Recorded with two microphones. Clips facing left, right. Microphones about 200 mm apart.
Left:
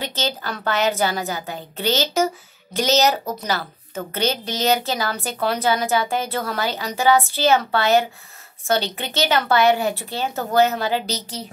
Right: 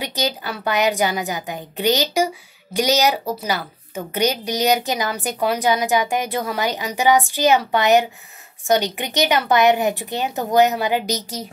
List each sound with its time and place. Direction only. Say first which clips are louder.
0.0 s a woman's voice: right 2 dB; 15° right (ahead or behind)